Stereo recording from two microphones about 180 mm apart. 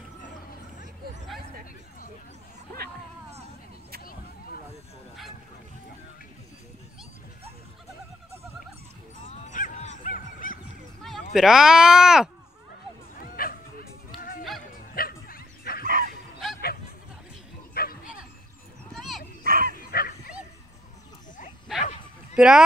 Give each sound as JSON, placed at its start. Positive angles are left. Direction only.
{"t": 4.0, "sound": "a sound", "side_deg": 55}
{"t": 9.5, "sound": "dog", "side_deg": 40}
{"t": 11.3, "sound": "speech", "side_deg": 0}
{"t": 13.2, "sound": "bow-wow", "side_deg": 55}
{"t": 15.0, "sound": "bow-wow", "side_deg": 55}
{"t": 15.8, "sound": "bow-wow", "side_deg": -50}
{"t": 17.7, "sound": "bow-wow", "side_deg": 55}
{"t": 18.9, "sound": "dog", "side_deg": 0}
{"t": 19.4, "sound": "dog", "side_deg": -55}
{"t": 19.8, "sound": "dog", "side_deg": 55}
{"t": 21.7, "sound": "bow-wow", "side_deg": -5}
{"t": 22.3, "sound": "a sound", "side_deg": -5}